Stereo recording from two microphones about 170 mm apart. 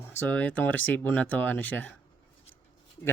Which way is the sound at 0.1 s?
10° left (ahead or behind).